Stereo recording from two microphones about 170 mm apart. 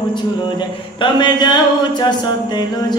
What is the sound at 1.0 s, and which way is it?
Music, 25° left (ahead or behind).